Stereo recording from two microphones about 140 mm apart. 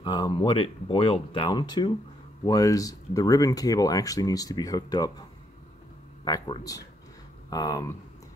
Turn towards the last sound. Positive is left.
turn(degrees=25)  # may be behind; listen again after turning